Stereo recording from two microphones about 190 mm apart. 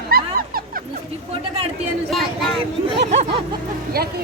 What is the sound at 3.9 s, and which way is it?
Speech, 55° right (ahead or behind).